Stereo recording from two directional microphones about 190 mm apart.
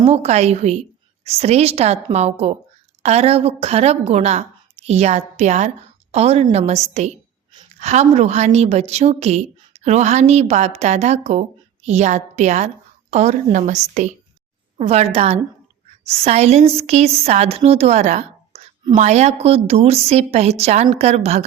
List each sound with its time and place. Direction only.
0.0 s a woman's voice: 35° right (ahead or behind)